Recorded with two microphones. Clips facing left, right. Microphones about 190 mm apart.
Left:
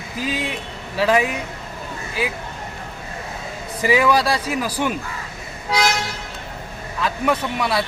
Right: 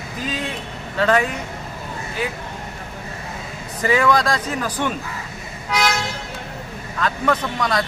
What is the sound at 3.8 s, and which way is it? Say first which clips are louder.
Speech: left 1 dB; 10° left (ahead or behind).